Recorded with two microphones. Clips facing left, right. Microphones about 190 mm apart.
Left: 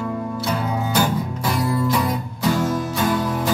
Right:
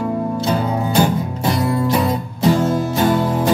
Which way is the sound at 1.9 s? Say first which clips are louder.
Right 4 dB; 30° right (ahead or behind).